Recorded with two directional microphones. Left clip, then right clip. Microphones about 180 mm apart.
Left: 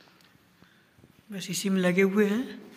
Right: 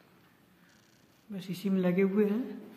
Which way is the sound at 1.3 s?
5° left (ahead or behind).